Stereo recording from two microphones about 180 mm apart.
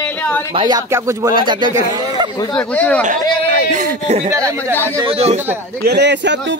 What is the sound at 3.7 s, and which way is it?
Speech, 55° right (ahead or behind).